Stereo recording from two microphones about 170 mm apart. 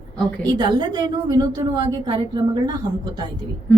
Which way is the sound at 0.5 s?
25° right (ahead or behind).